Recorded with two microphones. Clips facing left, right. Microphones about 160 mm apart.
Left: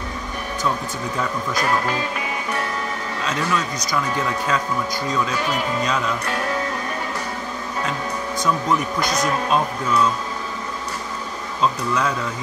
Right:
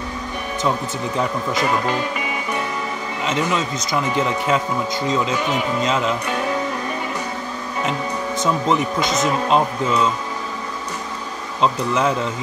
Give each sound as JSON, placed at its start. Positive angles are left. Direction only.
{"t": 1.6, "sound": "speech", "side_deg": 0}
{"t": 3.2, "sound": "speech", "side_deg": -20}
{"t": 8.4, "sound": "speech", "side_deg": -25}
{"t": 11.6, "sound": "speech", "side_deg": -20}